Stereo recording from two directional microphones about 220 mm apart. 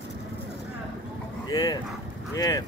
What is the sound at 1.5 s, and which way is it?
Speech, 15° left (ahead or behind).